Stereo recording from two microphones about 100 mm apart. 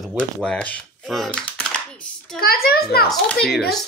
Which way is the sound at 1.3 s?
10° left (ahead or behind).